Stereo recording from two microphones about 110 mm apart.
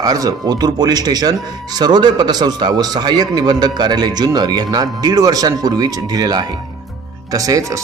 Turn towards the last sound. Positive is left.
turn(degrees=-30)  # may be behind; listen again after turning